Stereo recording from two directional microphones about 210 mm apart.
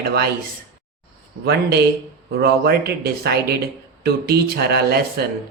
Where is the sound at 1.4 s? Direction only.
50° right (ahead or behind).